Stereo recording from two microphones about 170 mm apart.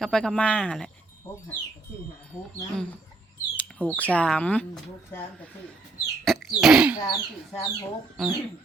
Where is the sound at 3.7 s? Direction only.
10° left (ahead or behind).